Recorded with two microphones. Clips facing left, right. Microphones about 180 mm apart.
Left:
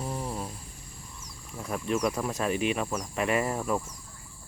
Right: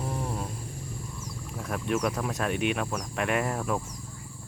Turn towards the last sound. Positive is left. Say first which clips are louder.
# left 1 dB
turn(degrees=0)  # may be behind; listen again after turning